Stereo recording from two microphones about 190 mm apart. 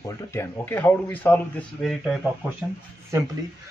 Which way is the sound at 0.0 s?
15° left (ahead or behind).